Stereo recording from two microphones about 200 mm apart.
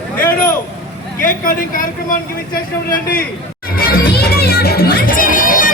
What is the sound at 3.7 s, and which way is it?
Crowd, 45° left (ahead or behind).